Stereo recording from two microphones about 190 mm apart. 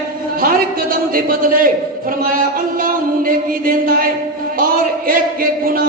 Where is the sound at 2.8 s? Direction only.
50° right (ahead or behind).